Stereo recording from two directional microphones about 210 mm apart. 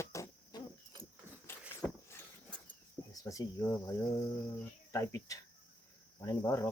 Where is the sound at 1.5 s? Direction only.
10° left (ahead or behind).